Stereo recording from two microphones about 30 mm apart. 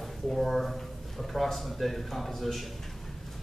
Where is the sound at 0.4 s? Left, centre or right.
Centre.